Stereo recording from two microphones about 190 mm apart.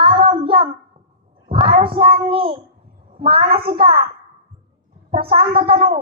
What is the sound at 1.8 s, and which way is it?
Speech, 30° right (ahead or behind).